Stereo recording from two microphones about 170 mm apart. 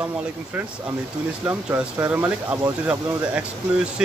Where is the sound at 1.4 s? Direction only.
10° right (ahead or behind).